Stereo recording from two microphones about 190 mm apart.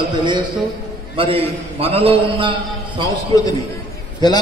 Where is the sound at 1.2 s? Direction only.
30° right (ahead or behind).